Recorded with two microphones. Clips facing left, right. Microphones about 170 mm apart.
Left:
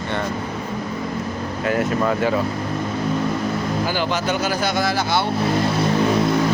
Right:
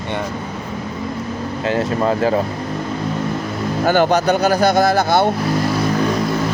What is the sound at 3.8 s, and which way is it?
Speech, 50° right (ahead or behind).